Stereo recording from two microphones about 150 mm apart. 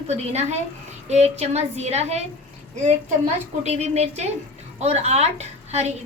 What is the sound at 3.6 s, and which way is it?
A woman's voice, 50° right (ahead or behind).